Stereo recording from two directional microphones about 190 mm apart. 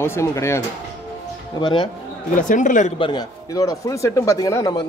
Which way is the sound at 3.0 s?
20° left (ahead or behind).